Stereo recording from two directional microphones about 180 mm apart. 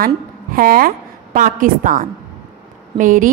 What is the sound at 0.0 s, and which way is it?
A woman's voice, 55° right (ahead or behind).